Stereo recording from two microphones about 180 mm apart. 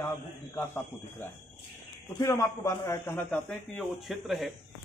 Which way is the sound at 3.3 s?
Centre (ahead or behind).